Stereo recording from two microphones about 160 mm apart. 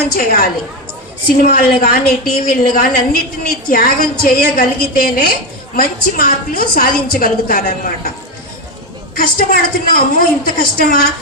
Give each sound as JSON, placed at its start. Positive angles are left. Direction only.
{"t": 0.0, "sound": "a woman's voice", "side_deg": 65}
{"t": 1.5, "sound": "a woman's voice", "side_deg": 65}
{"t": 9.1, "sound": "a woman's voice", "side_deg": 60}